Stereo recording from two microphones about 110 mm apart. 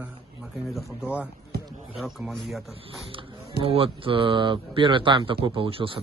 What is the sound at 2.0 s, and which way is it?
Speech, centre (ahead or behind).